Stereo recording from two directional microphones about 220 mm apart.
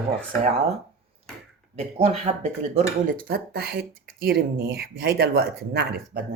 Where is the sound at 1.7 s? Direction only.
30° right (ahead or behind).